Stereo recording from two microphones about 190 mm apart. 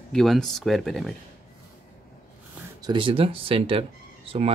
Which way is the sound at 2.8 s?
25° right (ahead or behind).